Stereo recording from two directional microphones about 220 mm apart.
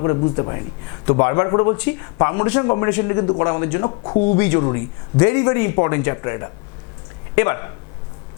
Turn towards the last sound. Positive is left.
turn(degrees=15)  # may be behind; listen again after turning